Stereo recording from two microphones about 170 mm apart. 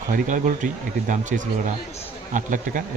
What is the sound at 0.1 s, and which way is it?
Speech, 50° right (ahead or behind).